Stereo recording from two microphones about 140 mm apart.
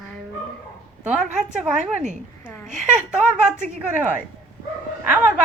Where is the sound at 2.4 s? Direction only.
15° left (ahead or behind).